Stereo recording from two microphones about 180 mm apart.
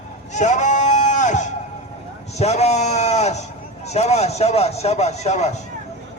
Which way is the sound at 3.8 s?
35° left (ahead or behind).